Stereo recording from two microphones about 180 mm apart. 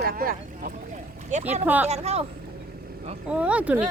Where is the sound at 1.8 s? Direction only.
35° right (ahead or behind).